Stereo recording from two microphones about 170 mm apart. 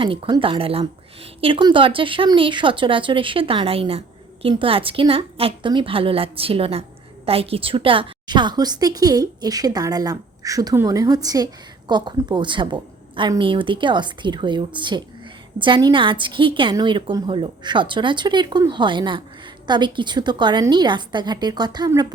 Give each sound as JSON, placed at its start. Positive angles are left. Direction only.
{"t": 0.0, "sound": "a woman's voice", "side_deg": -30}